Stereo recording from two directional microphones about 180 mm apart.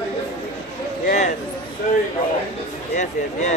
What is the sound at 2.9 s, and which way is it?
Speech, 40° left (ahead or behind).